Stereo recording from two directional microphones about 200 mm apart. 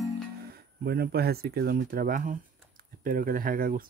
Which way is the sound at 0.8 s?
50° right (ahead or behind).